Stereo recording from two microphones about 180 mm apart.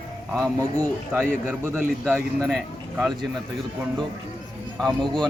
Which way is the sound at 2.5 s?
Centre (ahead or behind).